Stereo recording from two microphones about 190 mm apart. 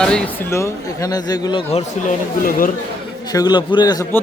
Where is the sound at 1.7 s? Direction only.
40° left (ahead or behind).